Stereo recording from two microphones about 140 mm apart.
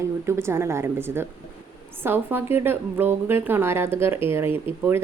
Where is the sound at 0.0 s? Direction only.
20° right (ahead or behind).